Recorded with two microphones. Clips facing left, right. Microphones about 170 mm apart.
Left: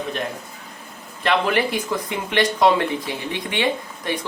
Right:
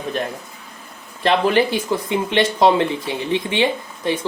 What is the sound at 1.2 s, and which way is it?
Speech, 30° right (ahead or behind).